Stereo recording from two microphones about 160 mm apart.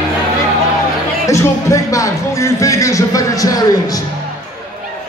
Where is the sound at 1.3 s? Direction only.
20° left (ahead or behind).